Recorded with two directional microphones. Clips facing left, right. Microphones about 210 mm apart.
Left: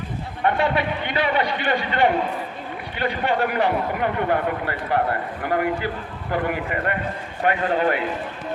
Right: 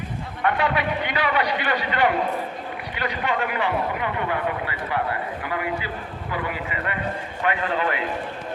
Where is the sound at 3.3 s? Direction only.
40° left (ahead or behind).